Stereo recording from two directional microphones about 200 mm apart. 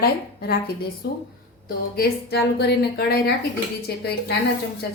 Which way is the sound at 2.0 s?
55° left (ahead or behind).